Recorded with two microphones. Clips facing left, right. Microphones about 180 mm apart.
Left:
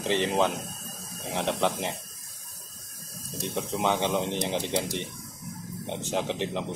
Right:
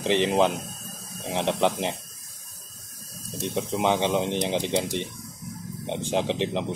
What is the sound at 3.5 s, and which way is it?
Speech, 20° right (ahead or behind).